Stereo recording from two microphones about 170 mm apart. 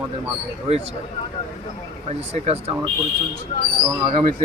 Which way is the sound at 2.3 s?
40° right (ahead or behind).